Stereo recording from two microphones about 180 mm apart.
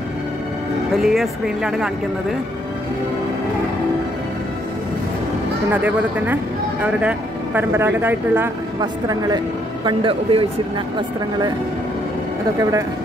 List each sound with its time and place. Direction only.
0.9 s speech: centre (ahead or behind)
5.7 s speech: 10° right (ahead or behind); by 10.4 s 30° right (ahead or behind)